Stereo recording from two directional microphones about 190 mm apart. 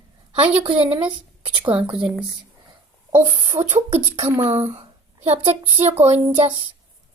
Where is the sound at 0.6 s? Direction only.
30° right (ahead or behind).